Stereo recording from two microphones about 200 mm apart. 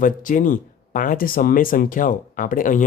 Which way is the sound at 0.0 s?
40° left (ahead or behind).